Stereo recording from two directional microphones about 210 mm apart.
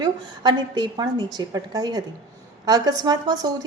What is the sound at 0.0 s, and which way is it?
A woman's voice, 20° right (ahead or behind).